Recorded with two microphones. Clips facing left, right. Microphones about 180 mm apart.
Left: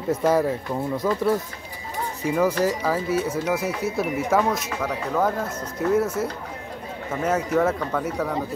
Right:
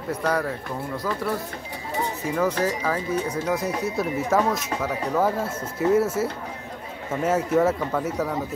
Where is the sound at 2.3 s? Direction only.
10° left (ahead or behind).